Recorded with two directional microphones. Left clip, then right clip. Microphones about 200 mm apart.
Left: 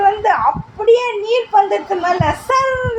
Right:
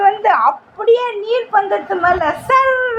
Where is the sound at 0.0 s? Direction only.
15° right (ahead or behind).